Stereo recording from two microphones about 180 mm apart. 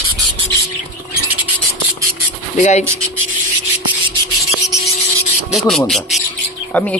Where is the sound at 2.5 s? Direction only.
40° left (ahead or behind).